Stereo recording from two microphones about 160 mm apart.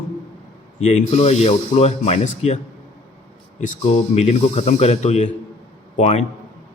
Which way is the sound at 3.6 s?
45° left (ahead or behind).